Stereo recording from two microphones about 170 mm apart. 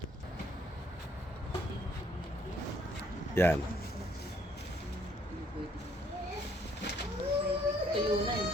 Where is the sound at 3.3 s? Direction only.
15° left (ahead or behind).